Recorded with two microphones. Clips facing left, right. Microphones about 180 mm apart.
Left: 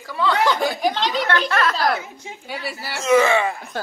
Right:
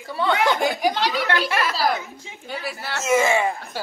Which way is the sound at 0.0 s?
25° right (ahead or behind).